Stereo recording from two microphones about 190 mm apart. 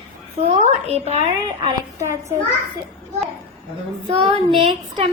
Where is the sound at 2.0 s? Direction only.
15° right (ahead or behind).